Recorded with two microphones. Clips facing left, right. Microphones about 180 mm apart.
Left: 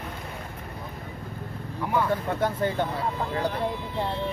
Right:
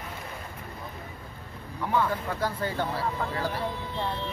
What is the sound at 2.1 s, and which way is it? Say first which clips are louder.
Speech: left 4 dB; 25° left (ahead or behind).